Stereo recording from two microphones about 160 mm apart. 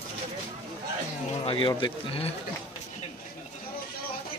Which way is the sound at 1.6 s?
30° left (ahead or behind).